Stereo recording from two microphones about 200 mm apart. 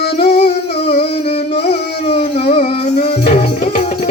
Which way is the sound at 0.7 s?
30° left (ahead or behind).